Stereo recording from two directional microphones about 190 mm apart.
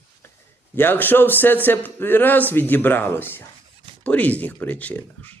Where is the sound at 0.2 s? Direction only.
15° left (ahead or behind).